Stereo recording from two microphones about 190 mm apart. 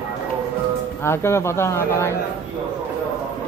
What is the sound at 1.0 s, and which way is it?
Speech, 15° left (ahead or behind).